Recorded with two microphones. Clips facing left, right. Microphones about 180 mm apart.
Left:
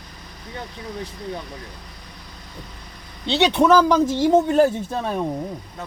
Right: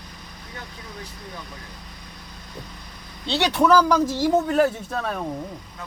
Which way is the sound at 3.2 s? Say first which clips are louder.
Left 3 dB; 20° left (ahead or behind).